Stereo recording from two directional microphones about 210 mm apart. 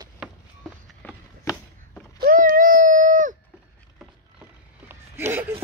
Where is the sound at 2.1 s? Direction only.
40° right (ahead or behind).